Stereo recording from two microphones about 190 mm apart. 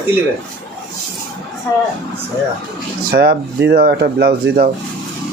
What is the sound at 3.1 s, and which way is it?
A man's voice, 55° right (ahead or behind).